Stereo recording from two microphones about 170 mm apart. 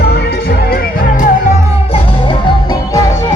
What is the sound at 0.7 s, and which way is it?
Music, 55° left (ahead or behind).